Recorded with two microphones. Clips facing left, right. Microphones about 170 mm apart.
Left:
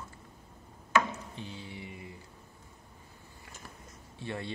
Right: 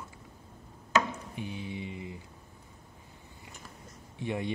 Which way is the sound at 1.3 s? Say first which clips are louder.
Right 5 dB; 15° right (ahead or behind).